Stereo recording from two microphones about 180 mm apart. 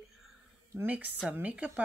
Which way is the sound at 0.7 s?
10° right (ahead or behind).